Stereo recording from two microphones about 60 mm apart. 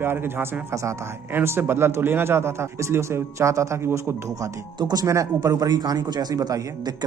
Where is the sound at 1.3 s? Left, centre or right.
Right.